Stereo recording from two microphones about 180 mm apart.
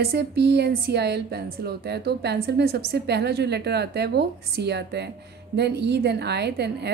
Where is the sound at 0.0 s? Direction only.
65° right (ahead or behind).